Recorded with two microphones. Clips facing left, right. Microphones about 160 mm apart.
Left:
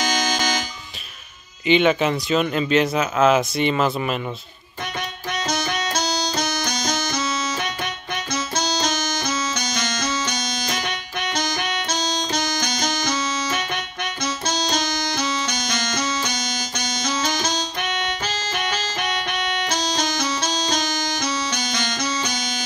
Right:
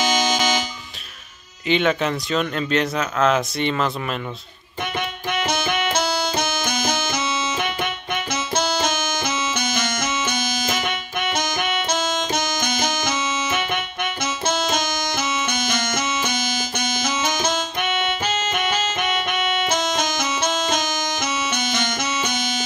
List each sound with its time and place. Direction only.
1.7 s speech: 5° left (ahead or behind)
5.7 s music: 55° right (ahead or behind)
8.5 s music: 55° right (ahead or behind)
11.9 s music: 50° right (ahead or behind)
14.4 s music: 55° right (ahead or behind)
16.3 s music: 55° right (ahead or behind)
19.7 s music: 50° right (ahead or behind)
21.9 s music: 25° right (ahead or behind)